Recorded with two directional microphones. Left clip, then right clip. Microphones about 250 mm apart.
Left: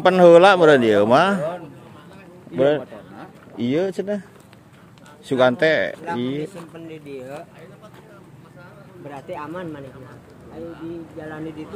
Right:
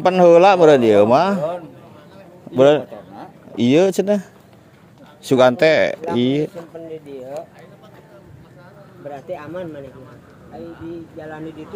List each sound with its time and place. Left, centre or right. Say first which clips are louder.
0.0 s a man's voice: even; centre
2.5 s a man's voice: right 6 dB; right
3.2 s a sound: right 7 dB; right
5.2 s speech: right 4 dB; right
9.3 s speech: right 1 dB; centre